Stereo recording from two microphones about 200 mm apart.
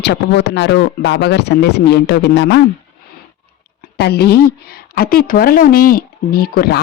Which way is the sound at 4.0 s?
55° left (ahead or behind).